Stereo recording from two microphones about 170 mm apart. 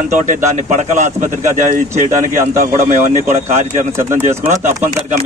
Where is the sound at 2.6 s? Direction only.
45° right (ahead or behind).